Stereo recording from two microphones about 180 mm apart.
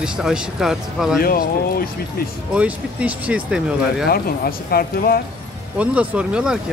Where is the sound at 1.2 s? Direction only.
55° left (ahead or behind).